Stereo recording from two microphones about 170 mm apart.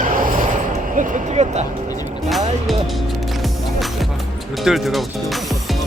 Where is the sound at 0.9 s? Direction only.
40° right (ahead or behind).